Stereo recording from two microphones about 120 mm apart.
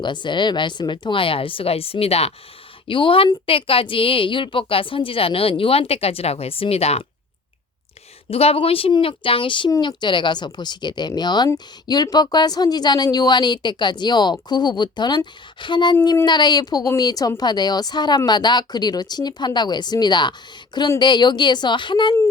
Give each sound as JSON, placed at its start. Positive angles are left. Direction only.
{"t": 0.0, "sound": "a woman's voice", "side_deg": 40}
{"t": 2.8, "sound": "a woman's voice", "side_deg": 45}
{"t": 8.3, "sound": "a woman's voice", "side_deg": 55}